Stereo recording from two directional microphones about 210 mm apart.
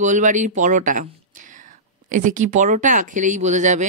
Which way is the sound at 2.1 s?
35° right (ahead or behind).